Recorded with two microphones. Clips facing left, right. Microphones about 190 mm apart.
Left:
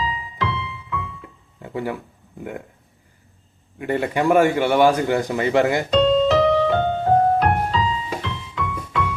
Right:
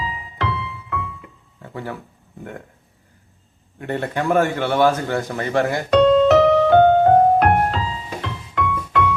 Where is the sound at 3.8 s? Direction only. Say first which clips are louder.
Left 3 dB; 10° left (ahead or behind).